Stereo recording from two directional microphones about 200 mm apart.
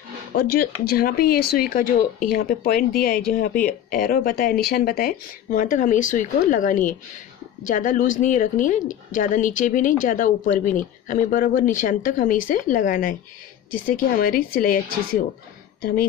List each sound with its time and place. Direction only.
0.4 s a woman's voice: 50° left (ahead or behind)